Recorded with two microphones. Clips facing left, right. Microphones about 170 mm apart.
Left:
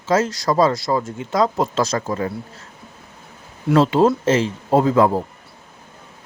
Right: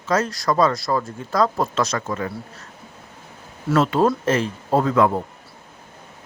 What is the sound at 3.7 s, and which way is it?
Speech, 30° left (ahead or behind).